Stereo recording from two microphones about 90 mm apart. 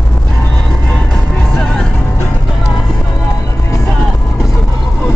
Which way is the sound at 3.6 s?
35° left (ahead or behind).